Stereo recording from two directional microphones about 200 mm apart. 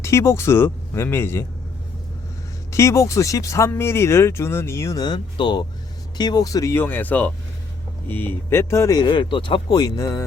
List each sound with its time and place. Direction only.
0.0 s speech: 15° left (ahead or behind)
2.7 s speech: 15° left (ahead or behind)